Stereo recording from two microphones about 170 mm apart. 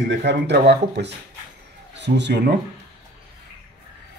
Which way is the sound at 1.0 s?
75° right (ahead or behind).